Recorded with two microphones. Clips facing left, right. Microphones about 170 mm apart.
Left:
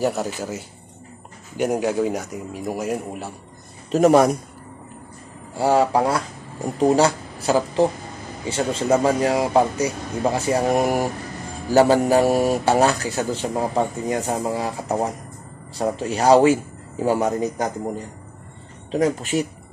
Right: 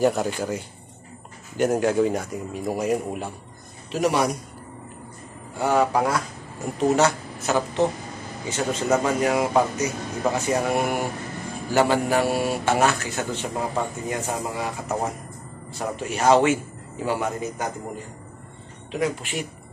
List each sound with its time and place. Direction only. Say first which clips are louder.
0.0 s a man's voice: right 2 dB; 5° left (ahead or behind)
3.9 s a man's voice: left 7 dB; 45° left (ahead or behind)
5.6 s speech: left 3 dB; 30° left (ahead or behind)
18.9 s speech: left 5 dB; 40° left (ahead or behind)